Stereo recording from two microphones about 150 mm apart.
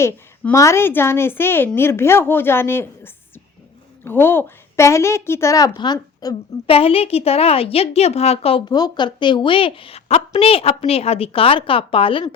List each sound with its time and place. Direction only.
0.0 s a woman's voice: 20° left (ahead or behind)
6.7 s a woman's voice: 40° left (ahead or behind)
8.7 s a woman's voice: 30° left (ahead or behind)